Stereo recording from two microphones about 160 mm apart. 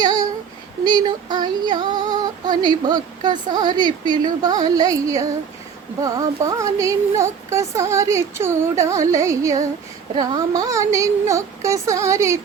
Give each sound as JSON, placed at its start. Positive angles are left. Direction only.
{"t": 0.9, "sound": "female singing", "side_deg": -25}
{"t": 6.0, "sound": "speech", "side_deg": -20}